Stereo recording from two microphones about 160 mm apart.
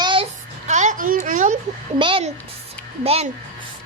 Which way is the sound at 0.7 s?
50° right (ahead or behind).